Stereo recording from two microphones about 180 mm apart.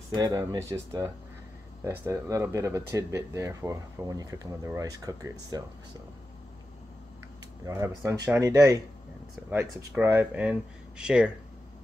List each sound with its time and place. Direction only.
0.1 s speech: 20° right (ahead or behind)
7.6 s speech: 15° right (ahead or behind)